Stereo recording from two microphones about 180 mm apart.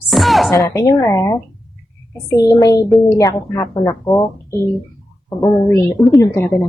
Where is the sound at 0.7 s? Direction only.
15° left (ahead or behind).